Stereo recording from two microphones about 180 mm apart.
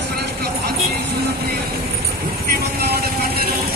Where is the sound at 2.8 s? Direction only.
60° right (ahead or behind).